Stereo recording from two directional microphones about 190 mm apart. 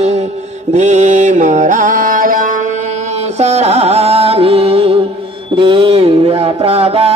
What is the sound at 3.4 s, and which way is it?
Music, 35° right (ahead or behind).